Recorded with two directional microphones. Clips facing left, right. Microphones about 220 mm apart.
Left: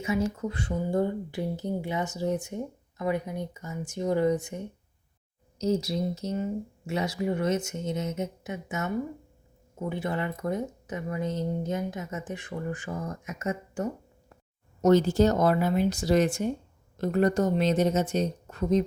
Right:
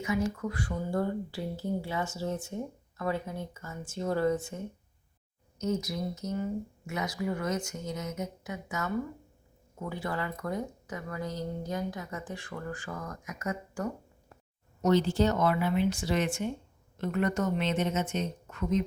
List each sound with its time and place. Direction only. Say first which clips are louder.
0.0 s speech: left 2 dB; 25° left (ahead or behind)
5.5 s speech: left 5 dB; 30° left (ahead or behind)
14.8 s speech: left 5 dB; 45° left (ahead or behind)